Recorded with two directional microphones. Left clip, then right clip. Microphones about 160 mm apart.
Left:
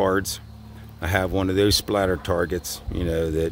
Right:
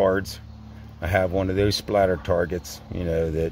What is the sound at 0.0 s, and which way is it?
Speech, 20° left (ahead or behind).